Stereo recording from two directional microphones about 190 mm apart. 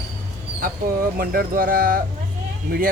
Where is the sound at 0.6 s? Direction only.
50° right (ahead or behind).